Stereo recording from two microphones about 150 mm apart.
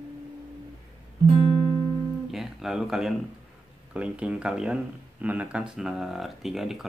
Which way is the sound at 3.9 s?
5° right (ahead or behind).